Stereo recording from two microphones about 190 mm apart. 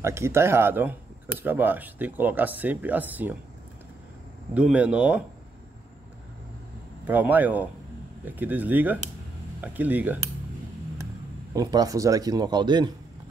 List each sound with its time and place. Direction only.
0.0 s speech: 15° right (ahead or behind)
4.6 s speech: 5° right (ahead or behind)
7.1 s speech: 10° right (ahead or behind)
11.5 s speech: 20° right (ahead or behind)